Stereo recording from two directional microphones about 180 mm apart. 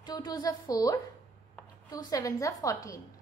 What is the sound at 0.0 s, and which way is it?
A woman's voice, 20° left (ahead or behind).